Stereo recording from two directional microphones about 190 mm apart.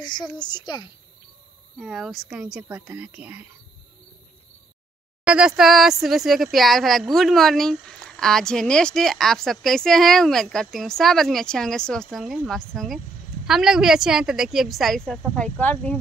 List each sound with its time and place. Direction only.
0.0 s speech: 25° left (ahead or behind)
1.8 s speech: centre (ahead or behind)
5.2 s speech: 5° right (ahead or behind)